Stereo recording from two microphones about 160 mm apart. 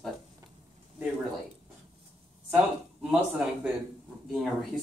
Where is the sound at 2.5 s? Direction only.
5° right (ahead or behind).